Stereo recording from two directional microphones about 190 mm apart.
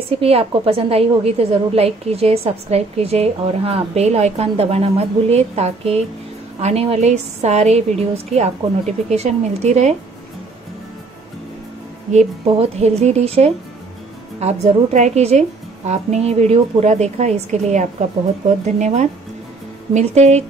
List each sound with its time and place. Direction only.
0.1 s a woman's voice: 30° right (ahead or behind)
12.1 s a woman's voice: 35° right (ahead or behind)